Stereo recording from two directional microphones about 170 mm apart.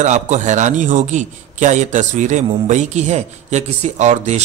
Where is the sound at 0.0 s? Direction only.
45° right (ahead or behind).